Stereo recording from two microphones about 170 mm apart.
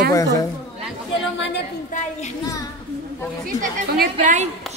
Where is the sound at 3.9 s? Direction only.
55° right (ahead or behind).